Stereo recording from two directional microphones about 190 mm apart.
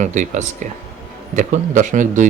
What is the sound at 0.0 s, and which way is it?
A man's voice, 40° right (ahead or behind).